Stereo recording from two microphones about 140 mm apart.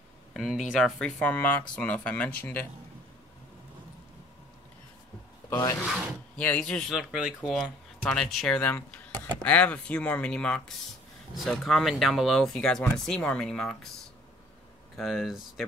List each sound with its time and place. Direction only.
0.3 s speech: 5° right (ahead or behind); by 2.6 s 15° left (ahead or behind)
5.5 s speech: 25° left (ahead or behind)
6.3 s speech: 10° left (ahead or behind)
15.0 s speech: 5° right (ahead or behind)